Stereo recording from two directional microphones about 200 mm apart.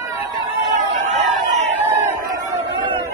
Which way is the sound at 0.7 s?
35° right (ahead or behind).